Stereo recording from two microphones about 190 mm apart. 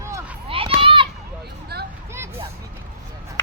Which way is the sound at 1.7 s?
55° right (ahead or behind).